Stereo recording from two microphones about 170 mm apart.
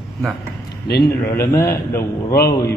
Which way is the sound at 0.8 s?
65° left (ahead or behind).